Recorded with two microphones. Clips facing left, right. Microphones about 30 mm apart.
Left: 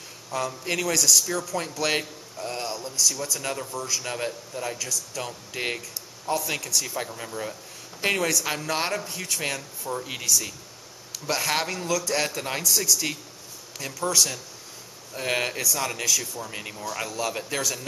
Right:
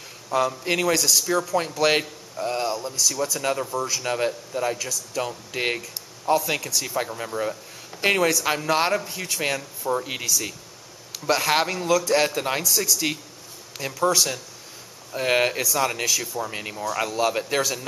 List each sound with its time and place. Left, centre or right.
0.3 s a man's voice: centre
10.2 s a man's voice: centre
13.7 s a man's voice: centre